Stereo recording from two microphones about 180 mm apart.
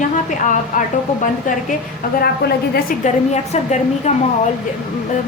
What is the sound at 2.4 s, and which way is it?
Speech, 60° left (ahead or behind).